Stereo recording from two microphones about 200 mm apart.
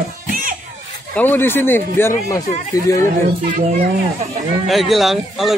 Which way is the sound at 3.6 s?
35° right (ahead or behind).